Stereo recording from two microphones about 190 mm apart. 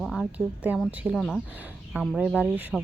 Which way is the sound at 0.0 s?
5° right (ahead or behind).